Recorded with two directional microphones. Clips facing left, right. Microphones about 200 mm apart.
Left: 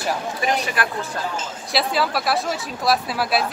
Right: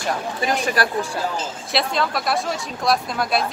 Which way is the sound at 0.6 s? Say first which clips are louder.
Right 4 dB; 40° right (ahead or behind).